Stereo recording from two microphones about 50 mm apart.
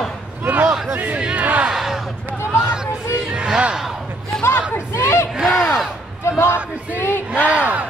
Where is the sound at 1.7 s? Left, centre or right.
Centre.